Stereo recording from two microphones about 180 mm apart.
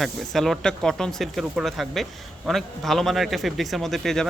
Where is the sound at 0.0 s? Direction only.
Centre (ahead or behind).